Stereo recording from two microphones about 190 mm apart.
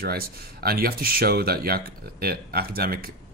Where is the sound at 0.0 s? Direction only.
55° right (ahead or behind).